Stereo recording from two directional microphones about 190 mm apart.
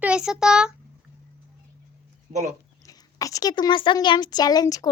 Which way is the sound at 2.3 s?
25° right (ahead or behind).